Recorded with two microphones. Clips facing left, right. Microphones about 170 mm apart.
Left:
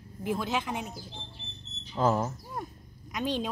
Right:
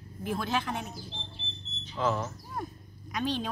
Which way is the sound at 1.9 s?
40° left (ahead or behind).